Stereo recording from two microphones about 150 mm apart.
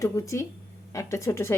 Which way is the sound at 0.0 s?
20° left (ahead or behind).